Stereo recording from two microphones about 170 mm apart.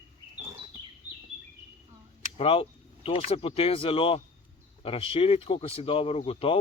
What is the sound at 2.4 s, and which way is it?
Speech, 35° left (ahead or behind).